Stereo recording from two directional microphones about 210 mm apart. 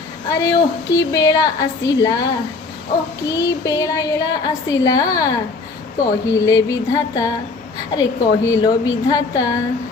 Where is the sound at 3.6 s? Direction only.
15° left (ahead or behind).